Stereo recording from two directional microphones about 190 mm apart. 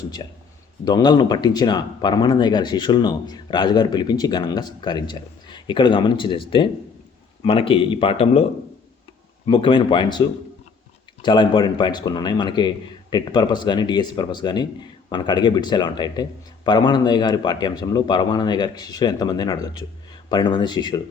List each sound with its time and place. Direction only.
0.2 s speech: 25° left (ahead or behind)
9.5 s speech: 25° left (ahead or behind)